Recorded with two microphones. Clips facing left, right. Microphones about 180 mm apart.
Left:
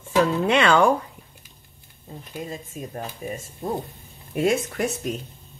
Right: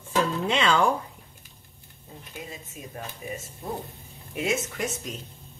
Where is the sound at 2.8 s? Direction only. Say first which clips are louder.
Left 7 dB; 40° left (ahead or behind).